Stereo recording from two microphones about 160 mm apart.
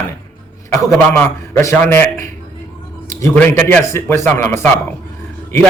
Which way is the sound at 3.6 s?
15° left (ahead or behind).